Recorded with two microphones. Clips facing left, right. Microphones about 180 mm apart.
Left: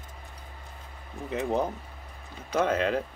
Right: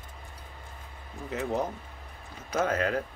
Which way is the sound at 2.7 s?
25° left (ahead or behind).